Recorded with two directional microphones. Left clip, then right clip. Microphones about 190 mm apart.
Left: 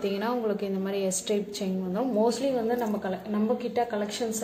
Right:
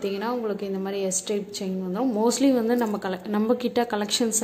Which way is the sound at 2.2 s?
30° right (ahead or behind).